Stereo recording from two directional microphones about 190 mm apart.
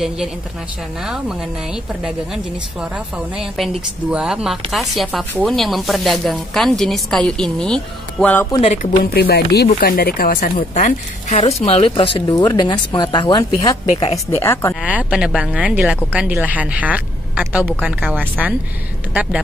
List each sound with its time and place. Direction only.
2.0 s a woman's voice: 5° right (ahead or behind)
8.5 s speech: 25° left (ahead or behind)
9.0 s a woman's voice: 55° left (ahead or behind); by 14.4 s 30° left (ahead or behind)
14.4 s speech: 15° left (ahead or behind)
14.8 s a woman's voice: 5° right (ahead or behind)